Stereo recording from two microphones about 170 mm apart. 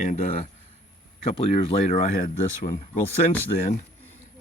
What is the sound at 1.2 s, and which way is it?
Speech, 35° left (ahead or behind).